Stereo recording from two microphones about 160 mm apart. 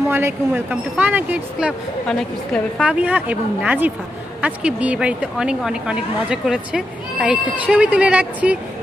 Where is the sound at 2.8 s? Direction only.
10° right (ahead or behind).